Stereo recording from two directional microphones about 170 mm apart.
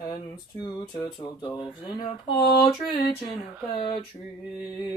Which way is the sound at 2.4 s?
65° left (ahead or behind).